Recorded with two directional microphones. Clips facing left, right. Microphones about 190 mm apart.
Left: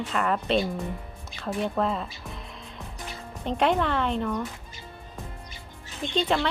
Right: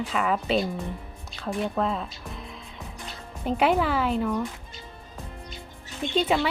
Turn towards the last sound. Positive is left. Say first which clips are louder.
# right 2 dB
turn(degrees=-5)  # may be behind; listen again after turning